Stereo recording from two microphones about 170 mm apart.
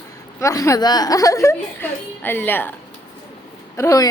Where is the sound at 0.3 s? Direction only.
20° left (ahead or behind).